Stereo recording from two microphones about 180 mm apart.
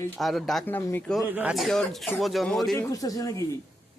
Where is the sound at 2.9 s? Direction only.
20° left (ahead or behind).